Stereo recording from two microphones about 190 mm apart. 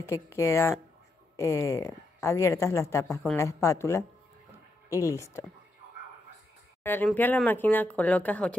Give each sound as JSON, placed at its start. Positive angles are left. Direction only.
{"t": 0.0, "sound": "a woman's voice", "side_deg": 15}
{"t": 6.8, "sound": "a sound", "side_deg": 10}
{"t": 7.1, "sound": "a woman's voice", "side_deg": 5}